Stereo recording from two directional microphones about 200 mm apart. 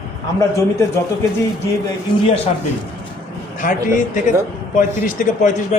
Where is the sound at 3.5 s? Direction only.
40° left (ahead or behind).